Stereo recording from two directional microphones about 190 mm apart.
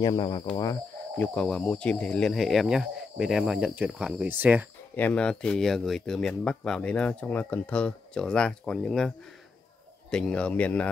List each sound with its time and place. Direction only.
0.0 s speech: 20° left (ahead or behind)
1.1 s speech: 5° left (ahead or behind); by 4.6 s 10° right (ahead or behind)
4.9 s speech: 5° left (ahead or behind)
10.1 s speech: 5° left (ahead or behind)